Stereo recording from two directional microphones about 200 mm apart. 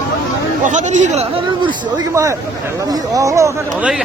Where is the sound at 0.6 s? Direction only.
35° right (ahead or behind).